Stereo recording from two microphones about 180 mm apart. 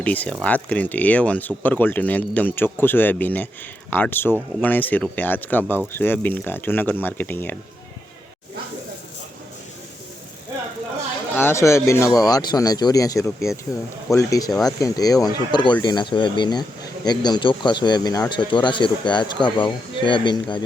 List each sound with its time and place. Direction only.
0.0 s speech: 10° left (ahead or behind)
11.3 s speech: 15° left (ahead or behind)